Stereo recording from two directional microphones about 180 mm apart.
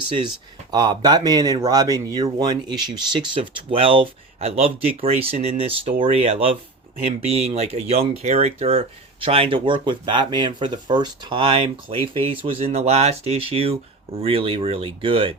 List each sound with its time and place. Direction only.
0.7 s speech: 20° right (ahead or behind)